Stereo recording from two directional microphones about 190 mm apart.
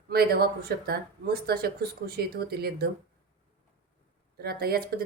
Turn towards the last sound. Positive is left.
turn(degrees=-55)  # may be behind; listen again after turning